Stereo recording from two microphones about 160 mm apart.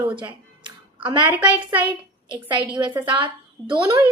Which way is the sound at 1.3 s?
10° right (ahead or behind).